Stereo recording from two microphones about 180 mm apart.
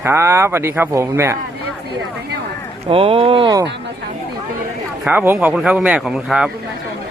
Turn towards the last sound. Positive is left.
turn(degrees=-5)  # may be behind; listen again after turning